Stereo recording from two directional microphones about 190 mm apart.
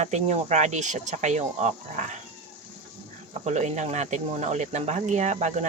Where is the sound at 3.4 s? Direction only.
35° right (ahead or behind).